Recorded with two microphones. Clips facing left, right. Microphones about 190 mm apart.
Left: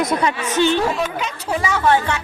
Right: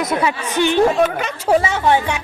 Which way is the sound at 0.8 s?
55° right (ahead or behind).